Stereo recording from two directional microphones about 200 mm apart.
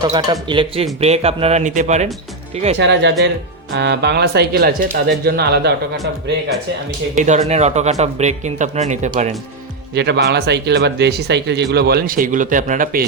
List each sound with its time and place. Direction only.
0.1 s speech: 20° right (ahead or behind)
2.7 s speech: 60° right (ahead or behind)
7.2 s speech: 35° right (ahead or behind)
9.9 s speech: 60° right (ahead or behind)